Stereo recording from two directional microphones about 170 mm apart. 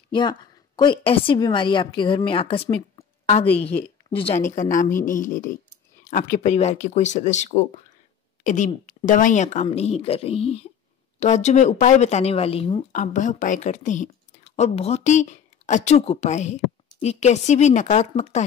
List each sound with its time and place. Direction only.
0.1 s a woman's voice: 25° left (ahead or behind)
4.5 s a woman's voice: 50° left (ahead or behind); by 12.8 s 35° left (ahead or behind)
12.9 s a woman's voice: 50° left (ahead or behind)